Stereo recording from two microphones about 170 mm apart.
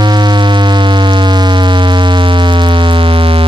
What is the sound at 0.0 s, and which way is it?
Music, 25° right (ahead or behind).